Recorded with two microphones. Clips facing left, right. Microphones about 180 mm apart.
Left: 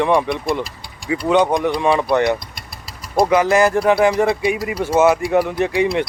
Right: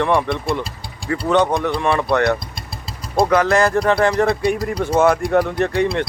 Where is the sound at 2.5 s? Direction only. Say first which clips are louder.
Right 4 dB; 25° right (ahead or behind).